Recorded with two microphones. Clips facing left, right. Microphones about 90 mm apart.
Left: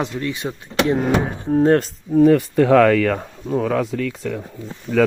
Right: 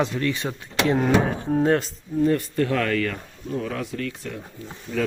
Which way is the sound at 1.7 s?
50° left (ahead or behind).